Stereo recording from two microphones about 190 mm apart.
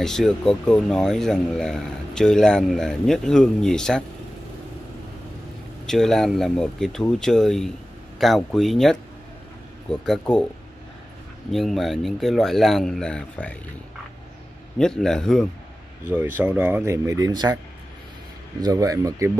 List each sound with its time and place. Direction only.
0.0 s speech: centre (ahead or behind)
5.9 s speech: centre (ahead or behind)
11.5 s speech: centre (ahead or behind)
14.8 s speech: centre (ahead or behind)
16.1 s speech: 10° right (ahead or behind)
18.6 s speech: 20° right (ahead or behind)